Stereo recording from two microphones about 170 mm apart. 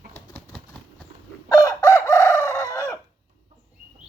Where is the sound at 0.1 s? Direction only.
10° left (ahead or behind).